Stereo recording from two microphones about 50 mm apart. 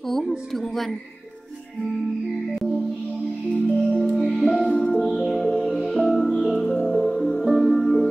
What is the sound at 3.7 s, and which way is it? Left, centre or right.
Music, centre.